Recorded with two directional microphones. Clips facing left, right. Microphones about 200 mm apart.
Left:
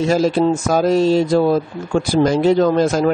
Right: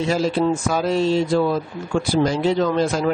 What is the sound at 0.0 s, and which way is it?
Speech, 45° left (ahead or behind).